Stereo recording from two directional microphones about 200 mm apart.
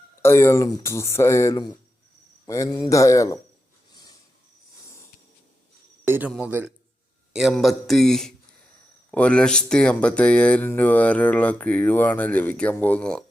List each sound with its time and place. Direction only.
0.2 s speech: 10° left (ahead or behind)
6.1 s a man's voice: 10° right (ahead or behind); by 13.2 s 5° left (ahead or behind)